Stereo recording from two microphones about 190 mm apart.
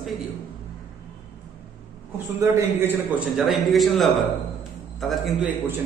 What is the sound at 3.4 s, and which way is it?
A man's voice, centre (ahead or behind).